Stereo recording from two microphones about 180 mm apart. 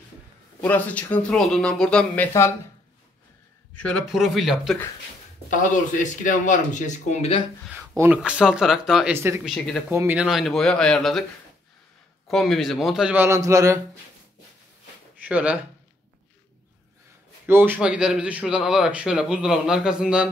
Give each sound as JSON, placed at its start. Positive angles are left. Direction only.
{"t": 0.6, "sound": "speech", "side_deg": 10}
{"t": 3.7, "sound": "a man's voice", "side_deg": 5}
{"t": 6.2, "sound": "speech", "side_deg": 45}
{"t": 8.0, "sound": "a man's voice", "side_deg": -5}
{"t": 9.4, "sound": "a man's voice", "side_deg": 0}
{"t": 12.3, "sound": "a man's voice", "side_deg": 0}
{"t": 15.2, "sound": "speech", "side_deg": -5}
{"t": 17.5, "sound": "a man's voice", "side_deg": -10}